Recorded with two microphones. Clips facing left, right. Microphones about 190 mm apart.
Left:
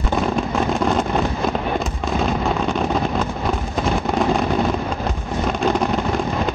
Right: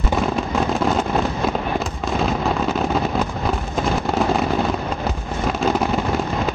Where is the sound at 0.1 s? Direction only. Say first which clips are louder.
Left 1 dB; centre (ahead or behind).